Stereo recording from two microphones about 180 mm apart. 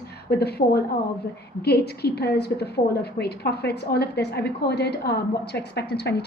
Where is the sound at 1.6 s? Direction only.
65° left (ahead or behind).